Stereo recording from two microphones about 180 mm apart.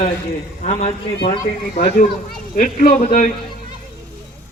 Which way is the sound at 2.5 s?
50° left (ahead or behind).